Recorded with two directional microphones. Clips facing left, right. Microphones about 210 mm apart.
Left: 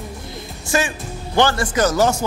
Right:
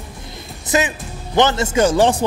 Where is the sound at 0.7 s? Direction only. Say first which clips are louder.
Right 2 dB; 20° right (ahead or behind).